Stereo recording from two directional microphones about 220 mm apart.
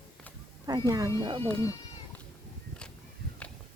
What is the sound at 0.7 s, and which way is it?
Speech, 20° right (ahead or behind).